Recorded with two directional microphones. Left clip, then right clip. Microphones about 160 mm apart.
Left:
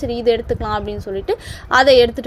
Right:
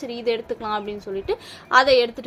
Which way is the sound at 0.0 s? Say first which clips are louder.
Left 8 dB; 30° left (ahead or behind).